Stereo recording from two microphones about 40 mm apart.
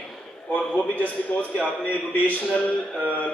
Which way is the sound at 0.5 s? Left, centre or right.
Left.